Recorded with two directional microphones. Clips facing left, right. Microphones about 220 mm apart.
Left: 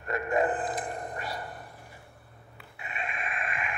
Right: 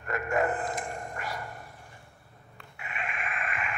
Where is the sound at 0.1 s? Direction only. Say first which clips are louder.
Left 1 dB; 30° left (ahead or behind).